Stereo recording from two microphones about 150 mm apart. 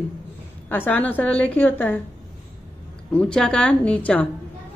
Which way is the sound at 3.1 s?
5° left (ahead or behind).